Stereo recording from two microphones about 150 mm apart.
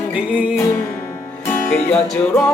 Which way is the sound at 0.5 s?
15° left (ahead or behind).